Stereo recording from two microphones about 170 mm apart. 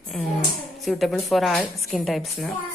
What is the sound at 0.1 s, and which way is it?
A woman's voice, 5° left (ahead or behind).